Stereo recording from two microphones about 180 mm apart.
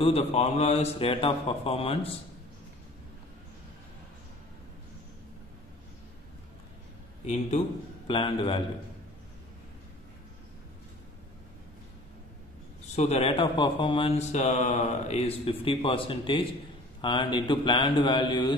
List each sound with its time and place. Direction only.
0.0 s speech: 35° left (ahead or behind)
8.1 s a man's voice: 30° left (ahead or behind)
12.9 s a man's voice: 35° left (ahead or behind)